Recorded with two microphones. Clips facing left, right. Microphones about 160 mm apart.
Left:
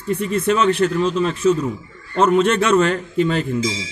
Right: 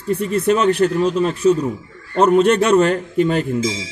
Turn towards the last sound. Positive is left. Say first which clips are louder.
# right 2 dB
turn(degrees=-45)  # may be behind; listen again after turning